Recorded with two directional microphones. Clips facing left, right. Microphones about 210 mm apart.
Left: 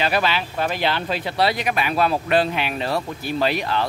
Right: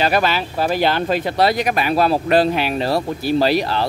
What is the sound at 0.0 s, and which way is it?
Speech, 45° right (ahead or behind).